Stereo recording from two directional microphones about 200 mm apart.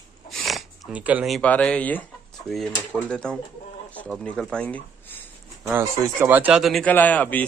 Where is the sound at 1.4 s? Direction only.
5° left (ahead or behind).